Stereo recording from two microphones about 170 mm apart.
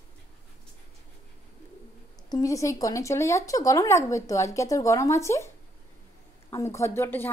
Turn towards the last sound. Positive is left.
turn(degrees=15)  # may be behind; listen again after turning